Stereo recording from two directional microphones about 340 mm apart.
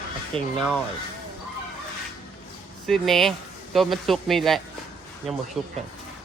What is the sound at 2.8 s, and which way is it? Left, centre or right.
Speech, centre.